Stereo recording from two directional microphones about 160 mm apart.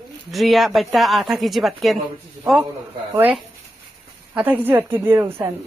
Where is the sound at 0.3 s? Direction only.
Centre (ahead or behind).